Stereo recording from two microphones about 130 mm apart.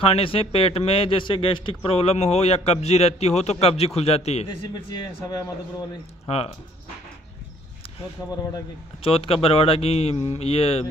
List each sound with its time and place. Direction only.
0.0 s a man's voice: 45° left (ahead or behind)
4.5 s speech: 35° left (ahead or behind)
6.2 s speech: 50° left (ahead or behind)
9.0 s a man's voice: 45° left (ahead or behind)